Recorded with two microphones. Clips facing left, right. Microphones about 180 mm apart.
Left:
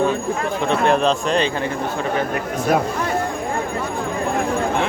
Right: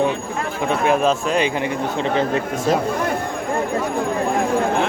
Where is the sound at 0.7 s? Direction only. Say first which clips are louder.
Even; 5° right (ahead or behind).